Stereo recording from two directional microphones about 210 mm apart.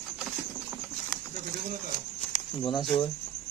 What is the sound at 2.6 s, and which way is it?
Speech, 20° left (ahead or behind).